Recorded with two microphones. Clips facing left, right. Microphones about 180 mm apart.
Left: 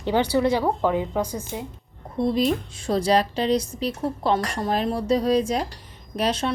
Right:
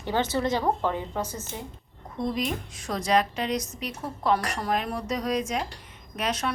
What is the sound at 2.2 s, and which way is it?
Speech, 30° left (ahead or behind).